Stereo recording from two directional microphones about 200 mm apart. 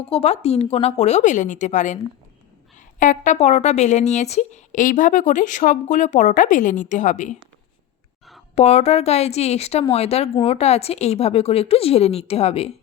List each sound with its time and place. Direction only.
0.1 s a woman's voice: 30° left (ahead or behind)
8.5 s a woman's voice: 30° left (ahead or behind)